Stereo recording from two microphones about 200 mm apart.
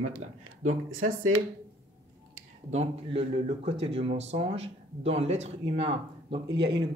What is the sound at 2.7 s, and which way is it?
A man's voice, 30° right (ahead or behind).